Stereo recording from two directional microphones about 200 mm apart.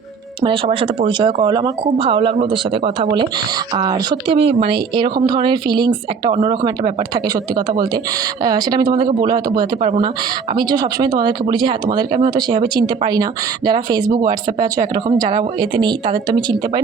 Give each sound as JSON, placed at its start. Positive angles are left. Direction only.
{"t": 0.4, "sound": "speech", "side_deg": -25}
{"t": 8.4, "sound": "speech", "side_deg": -20}